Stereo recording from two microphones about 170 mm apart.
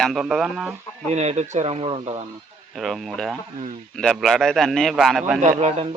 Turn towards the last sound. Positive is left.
turn(degrees=-40)  # may be behind; listen again after turning